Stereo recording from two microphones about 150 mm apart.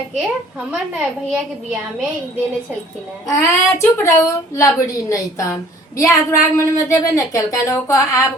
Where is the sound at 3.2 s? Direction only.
20° left (ahead or behind).